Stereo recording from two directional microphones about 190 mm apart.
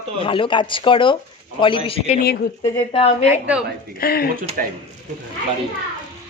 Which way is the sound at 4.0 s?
55° left (ahead or behind).